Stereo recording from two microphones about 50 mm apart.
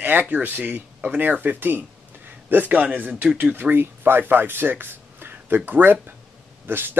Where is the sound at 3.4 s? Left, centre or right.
Right.